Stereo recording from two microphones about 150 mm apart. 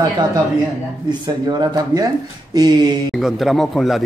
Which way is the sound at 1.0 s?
30° right (ahead or behind).